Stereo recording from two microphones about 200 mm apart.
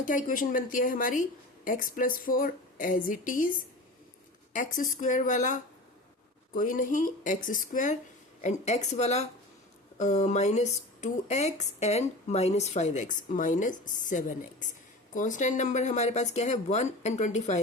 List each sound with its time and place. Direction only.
0.0 s a woman's voice: 40° left (ahead or behind)
4.5 s a woman's voice: 40° left (ahead or behind)